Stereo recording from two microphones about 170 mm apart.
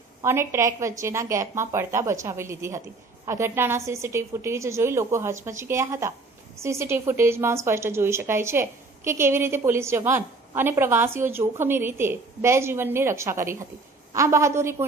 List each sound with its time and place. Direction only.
0.2 s a woman's voice: 15° right (ahead or behind)